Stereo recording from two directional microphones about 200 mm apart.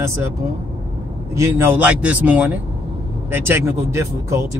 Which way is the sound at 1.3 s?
15° right (ahead or behind).